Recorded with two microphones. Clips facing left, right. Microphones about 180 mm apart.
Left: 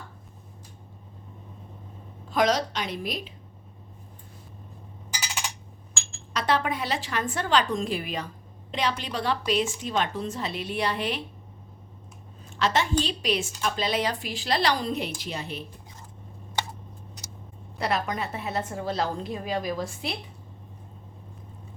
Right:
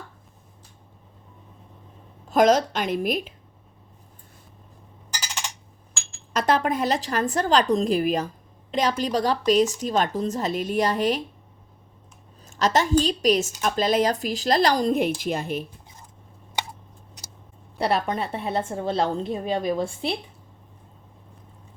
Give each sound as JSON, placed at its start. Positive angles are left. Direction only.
{"t": 2.3, "sound": "a woman's voice", "side_deg": -45}
{"t": 6.3, "sound": "speech", "side_deg": -45}
{"t": 12.5, "sound": "a woman's voice", "side_deg": -40}
{"t": 17.7, "sound": "a woman's voice", "side_deg": -30}